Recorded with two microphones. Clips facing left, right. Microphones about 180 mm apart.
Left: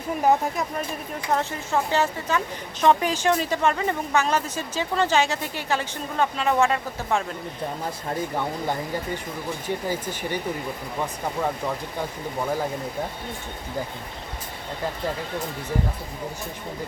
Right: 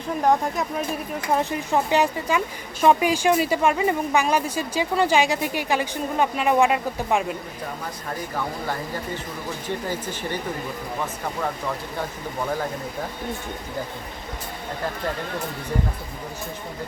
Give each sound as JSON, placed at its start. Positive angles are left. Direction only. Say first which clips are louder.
{"t": 0.2, "sound": "speech", "louder": "even", "side_deg": 5}
{"t": 1.3, "sound": "speech", "louder": "right 2 dB", "side_deg": -15}
{"t": 9.6, "sound": "speech", "louder": "left 1 dB", "side_deg": 10}